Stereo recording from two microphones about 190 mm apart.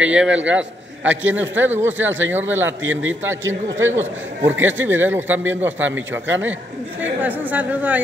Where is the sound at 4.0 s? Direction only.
10° right (ahead or behind).